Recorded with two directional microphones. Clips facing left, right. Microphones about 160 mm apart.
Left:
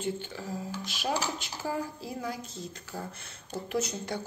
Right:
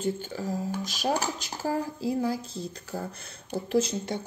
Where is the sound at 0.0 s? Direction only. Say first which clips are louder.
Right 4 dB; 40° right (ahead or behind).